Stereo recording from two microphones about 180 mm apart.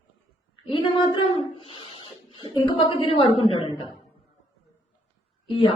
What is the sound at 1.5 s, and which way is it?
Speech, 30° left (ahead or behind).